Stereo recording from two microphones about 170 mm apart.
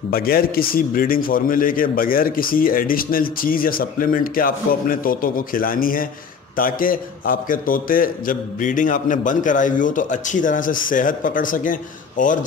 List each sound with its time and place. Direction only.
0.1 s a man's voice: 60° left (ahead or behind)